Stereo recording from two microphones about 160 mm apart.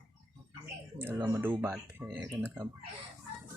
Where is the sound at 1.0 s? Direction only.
10° right (ahead or behind).